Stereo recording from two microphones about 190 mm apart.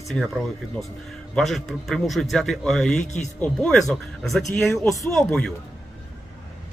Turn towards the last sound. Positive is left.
turn(degrees=0)  # may be behind; listen again after turning